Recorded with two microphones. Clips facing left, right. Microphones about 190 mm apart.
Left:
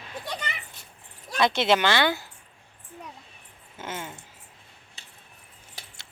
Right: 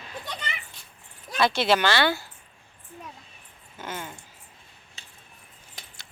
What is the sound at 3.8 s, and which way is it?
Speech, 25° left (ahead or behind).